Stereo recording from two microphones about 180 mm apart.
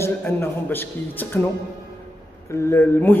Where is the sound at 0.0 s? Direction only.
10° left (ahead or behind).